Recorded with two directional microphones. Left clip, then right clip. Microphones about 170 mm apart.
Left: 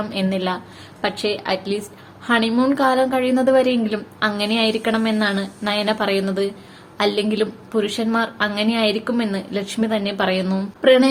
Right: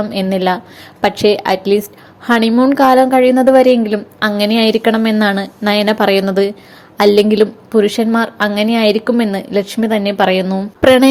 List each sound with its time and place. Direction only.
0.1 s a woman's voice: 35° right (ahead or behind)
2.7 s a woman's voice: 35° right (ahead or behind)
10.4 s a woman's voice: 20° right (ahead or behind)
10.8 s speech: 50° right (ahead or behind)